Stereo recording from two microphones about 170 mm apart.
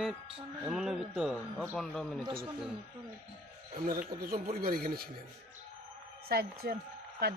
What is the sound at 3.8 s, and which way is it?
Speech, 60° right (ahead or behind).